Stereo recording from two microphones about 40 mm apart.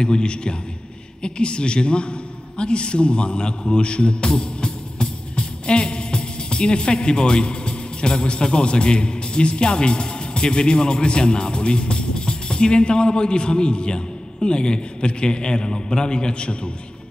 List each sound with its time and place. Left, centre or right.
0.0 s a man's voice: left